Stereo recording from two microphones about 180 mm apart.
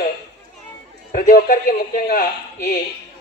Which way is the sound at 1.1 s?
50° left (ahead or behind).